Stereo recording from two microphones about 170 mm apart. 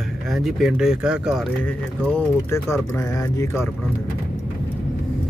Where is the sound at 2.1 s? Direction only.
15° left (ahead or behind).